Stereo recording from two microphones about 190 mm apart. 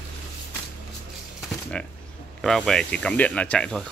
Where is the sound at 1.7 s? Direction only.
5° left (ahead or behind).